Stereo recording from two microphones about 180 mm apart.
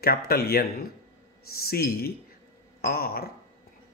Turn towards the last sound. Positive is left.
turn(degrees=55)  # may be behind; listen again after turning